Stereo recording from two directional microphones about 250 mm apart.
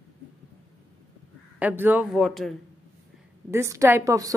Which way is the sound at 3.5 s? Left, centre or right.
Centre.